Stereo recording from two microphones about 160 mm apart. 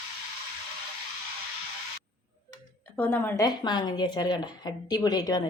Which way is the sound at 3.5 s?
30° left (ahead or behind).